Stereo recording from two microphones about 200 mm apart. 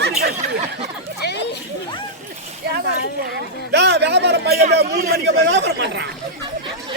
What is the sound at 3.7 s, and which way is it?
Speech, 55° right (ahead or behind).